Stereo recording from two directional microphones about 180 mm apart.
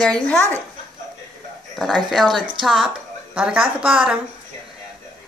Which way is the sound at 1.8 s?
Centre (ahead or behind).